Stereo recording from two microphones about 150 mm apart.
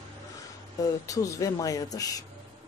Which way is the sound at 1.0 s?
20° left (ahead or behind).